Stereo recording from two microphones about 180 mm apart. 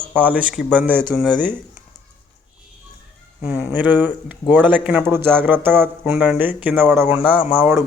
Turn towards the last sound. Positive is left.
turn(degrees=-10)  # may be behind; listen again after turning